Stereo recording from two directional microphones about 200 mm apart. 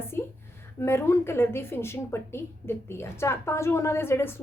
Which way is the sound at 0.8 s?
10° left (ahead or behind).